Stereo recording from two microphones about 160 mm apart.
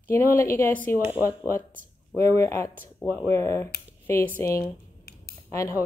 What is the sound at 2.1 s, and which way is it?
A woman's voice, 15° left (ahead or behind).